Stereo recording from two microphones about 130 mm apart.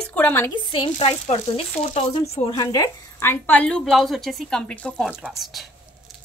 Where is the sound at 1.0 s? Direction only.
55° left (ahead or behind).